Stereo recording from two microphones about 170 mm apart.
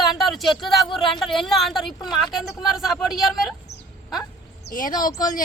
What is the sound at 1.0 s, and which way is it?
Speech, centre (ahead or behind).